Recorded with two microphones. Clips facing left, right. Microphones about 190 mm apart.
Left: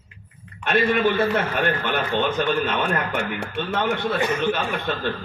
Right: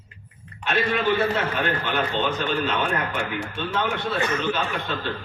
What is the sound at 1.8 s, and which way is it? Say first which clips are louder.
A man's voice: left 2 dB; 55° left (ahead or behind).